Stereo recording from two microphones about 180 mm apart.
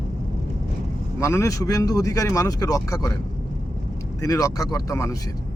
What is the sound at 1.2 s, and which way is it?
Speech, 15° left (ahead or behind).